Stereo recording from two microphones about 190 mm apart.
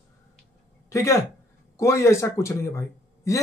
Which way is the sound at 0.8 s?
15° left (ahead or behind).